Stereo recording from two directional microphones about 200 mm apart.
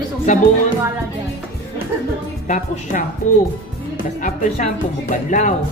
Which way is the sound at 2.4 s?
40° left (ahead or behind).